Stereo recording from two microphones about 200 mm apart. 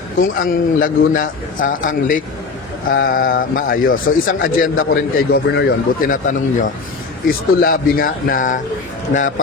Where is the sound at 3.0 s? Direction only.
45° left (ahead or behind).